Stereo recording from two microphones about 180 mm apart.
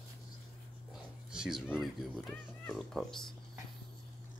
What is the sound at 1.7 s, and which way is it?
Speech, centre (ahead or behind).